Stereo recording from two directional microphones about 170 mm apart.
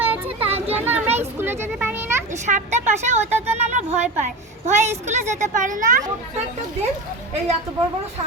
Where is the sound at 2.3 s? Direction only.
45° right (ahead or behind).